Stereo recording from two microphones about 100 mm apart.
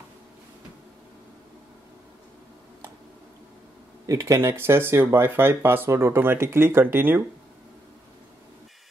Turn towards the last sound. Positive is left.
turn(degrees=-20)  # may be behind; listen again after turning